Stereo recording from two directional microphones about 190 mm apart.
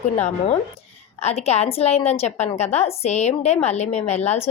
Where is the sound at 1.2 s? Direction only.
35° left (ahead or behind).